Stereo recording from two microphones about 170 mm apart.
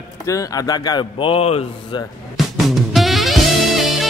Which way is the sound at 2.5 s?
Centre (ahead or behind).